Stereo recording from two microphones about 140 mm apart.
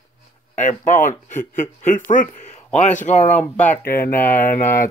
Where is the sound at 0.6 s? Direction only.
60° left (ahead or behind).